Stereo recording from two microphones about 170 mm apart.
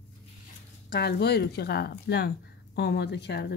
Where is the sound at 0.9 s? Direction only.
75° left (ahead or behind).